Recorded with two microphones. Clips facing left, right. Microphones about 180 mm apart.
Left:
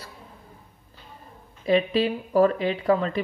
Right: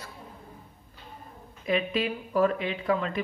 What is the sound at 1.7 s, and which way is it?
Speech, 35° left (ahead or behind).